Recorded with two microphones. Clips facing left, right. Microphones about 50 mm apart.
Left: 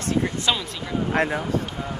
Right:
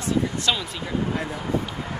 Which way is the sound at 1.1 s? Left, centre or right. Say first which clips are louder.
Left 7 dB; left.